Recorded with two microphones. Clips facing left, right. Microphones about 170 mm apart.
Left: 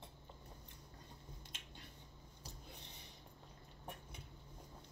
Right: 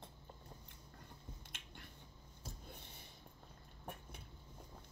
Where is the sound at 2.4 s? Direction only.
50° right (ahead or behind).